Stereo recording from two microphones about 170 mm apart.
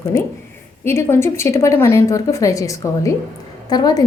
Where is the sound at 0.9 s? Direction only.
15° left (ahead or behind).